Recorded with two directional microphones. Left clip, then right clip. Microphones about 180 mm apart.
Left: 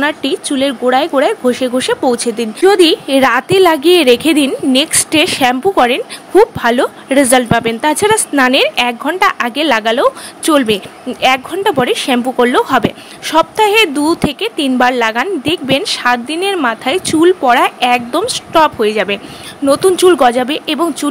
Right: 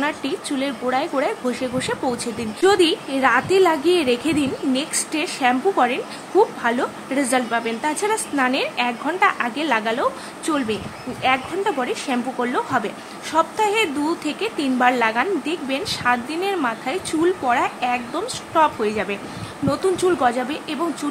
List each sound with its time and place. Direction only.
0.0 s a woman's voice: 40° left (ahead or behind)